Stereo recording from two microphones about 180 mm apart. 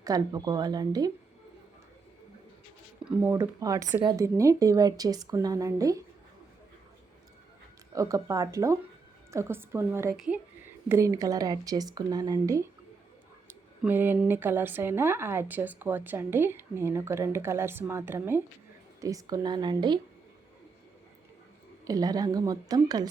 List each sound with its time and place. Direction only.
0.0 s speech: 20° right (ahead or behind)
3.0 s speech: 5° right (ahead or behind)
7.9 s speech: 20° right (ahead or behind)
21.8 s speech: 20° right (ahead or behind)